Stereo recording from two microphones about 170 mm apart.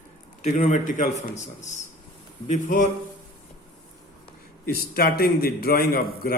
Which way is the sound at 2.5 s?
50° left (ahead or behind).